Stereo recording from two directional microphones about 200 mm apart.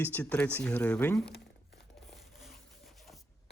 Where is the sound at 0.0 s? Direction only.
10° left (ahead or behind).